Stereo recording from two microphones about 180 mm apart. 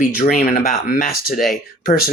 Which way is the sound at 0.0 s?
50° left (ahead or behind).